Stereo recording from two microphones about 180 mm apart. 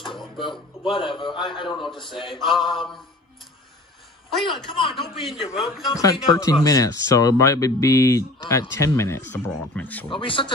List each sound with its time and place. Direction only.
0.5 s a man's voice: 25° left (ahead or behind)
1.8 s a man's voice: centre (ahead or behind)
2.1 s a man's voice: 30° left (ahead or behind)
2.4 s a man's voice: centre (ahead or behind)
4.5 s a man's voice: 30° left (ahead or behind)
4.9 s a man's voice: centre (ahead or behind)
5.9 s speech: 20° left (ahead or behind)
10.0 s a man's voice: 30° left (ahead or behind)